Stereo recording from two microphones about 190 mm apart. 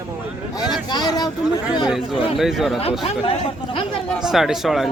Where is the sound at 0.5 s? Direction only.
20° left (ahead or behind).